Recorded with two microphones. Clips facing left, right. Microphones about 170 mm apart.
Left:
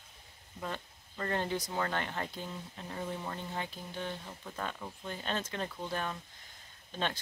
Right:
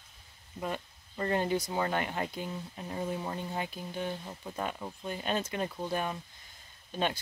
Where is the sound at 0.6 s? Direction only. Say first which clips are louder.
Right 4 dB; 15° right (ahead or behind).